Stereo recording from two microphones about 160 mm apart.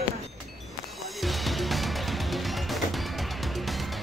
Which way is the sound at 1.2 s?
Centre (ahead or behind).